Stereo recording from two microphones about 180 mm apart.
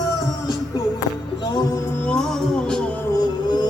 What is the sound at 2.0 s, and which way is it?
Music, 5° left (ahead or behind).